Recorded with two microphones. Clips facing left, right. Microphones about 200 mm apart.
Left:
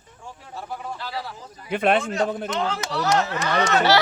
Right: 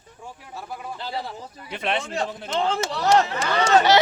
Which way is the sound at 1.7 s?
50° left (ahead or behind).